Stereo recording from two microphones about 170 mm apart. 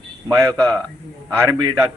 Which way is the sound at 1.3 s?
15° right (ahead or behind).